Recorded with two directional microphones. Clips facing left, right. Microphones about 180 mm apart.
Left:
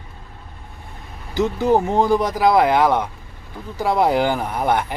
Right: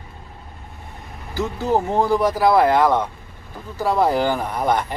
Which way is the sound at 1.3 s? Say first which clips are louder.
Left 4 dB; 20° left (ahead or behind).